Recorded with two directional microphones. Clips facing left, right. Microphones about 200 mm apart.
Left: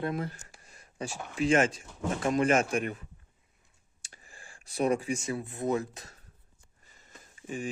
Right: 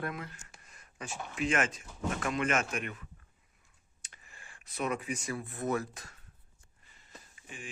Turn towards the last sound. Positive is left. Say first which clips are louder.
# left 12 dB
turn(degrees=40)  # may be behind; listen again after turning